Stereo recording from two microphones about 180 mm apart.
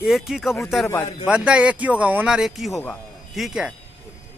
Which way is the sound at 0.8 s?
20° left (ahead or behind).